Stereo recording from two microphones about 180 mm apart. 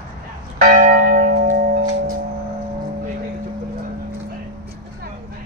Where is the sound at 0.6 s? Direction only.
50° right (ahead or behind).